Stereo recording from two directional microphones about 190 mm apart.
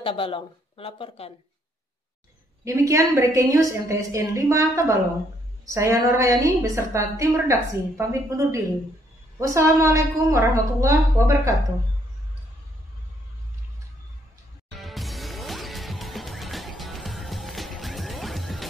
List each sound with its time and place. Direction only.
0.0 s speech: 30° left (ahead or behind)
2.6 s a woman's voice: 15° right (ahead or behind)
14.8 s music: centre (ahead or behind)